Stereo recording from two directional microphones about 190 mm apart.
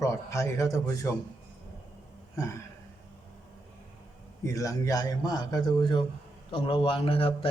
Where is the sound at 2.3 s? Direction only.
15° left (ahead or behind).